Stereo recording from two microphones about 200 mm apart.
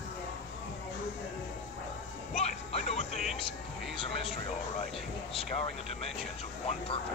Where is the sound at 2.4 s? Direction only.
35° left (ahead or behind).